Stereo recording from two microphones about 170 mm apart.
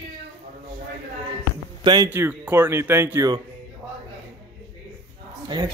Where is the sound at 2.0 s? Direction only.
10° right (ahead or behind).